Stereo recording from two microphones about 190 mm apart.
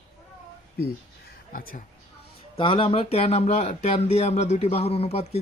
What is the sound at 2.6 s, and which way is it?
Speech, 25° left (ahead or behind).